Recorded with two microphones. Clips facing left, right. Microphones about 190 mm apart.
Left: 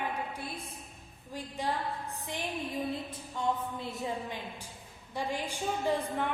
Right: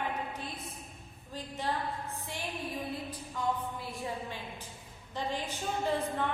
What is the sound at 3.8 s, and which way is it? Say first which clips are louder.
A woman's voice: left 2 dB; 20° left (ahead or behind).